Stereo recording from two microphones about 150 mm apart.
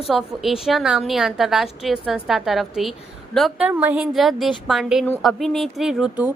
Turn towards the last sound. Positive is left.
turn(degrees=-5)  # may be behind; listen again after turning